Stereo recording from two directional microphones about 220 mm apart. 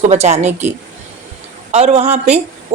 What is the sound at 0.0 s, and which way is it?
Speech, 30° right (ahead or behind).